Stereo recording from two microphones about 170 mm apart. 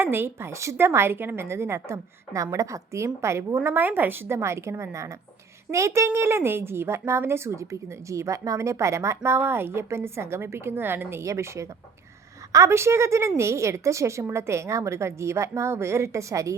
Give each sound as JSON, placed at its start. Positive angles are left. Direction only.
{"t": 0.0, "sound": "speech", "side_deg": -15}